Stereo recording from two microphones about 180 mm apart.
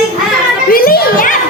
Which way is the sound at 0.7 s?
55° left (ahead or behind).